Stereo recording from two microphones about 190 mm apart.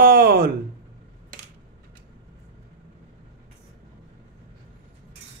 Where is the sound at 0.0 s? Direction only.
50° right (ahead or behind).